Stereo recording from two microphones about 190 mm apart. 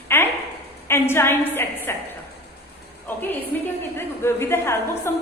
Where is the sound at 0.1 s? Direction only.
10° left (ahead or behind).